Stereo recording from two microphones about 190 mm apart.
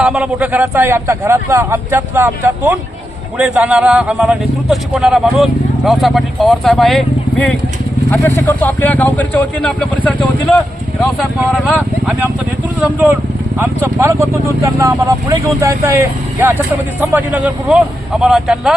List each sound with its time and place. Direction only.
0.0 s speech: 5° right (ahead or behind)